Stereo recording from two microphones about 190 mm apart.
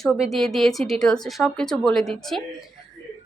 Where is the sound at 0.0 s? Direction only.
Centre (ahead or behind).